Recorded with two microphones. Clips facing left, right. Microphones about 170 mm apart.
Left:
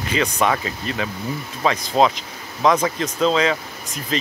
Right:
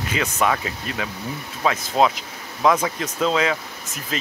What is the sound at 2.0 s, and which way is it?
Speech, 30° left (ahead or behind).